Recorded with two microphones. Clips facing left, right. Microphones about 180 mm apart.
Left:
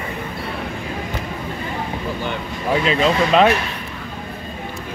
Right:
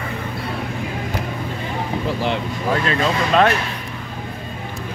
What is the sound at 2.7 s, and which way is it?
Speech, 10° left (ahead or behind).